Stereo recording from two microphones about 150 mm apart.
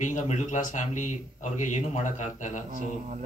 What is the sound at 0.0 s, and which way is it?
Speech, 55° left (ahead or behind).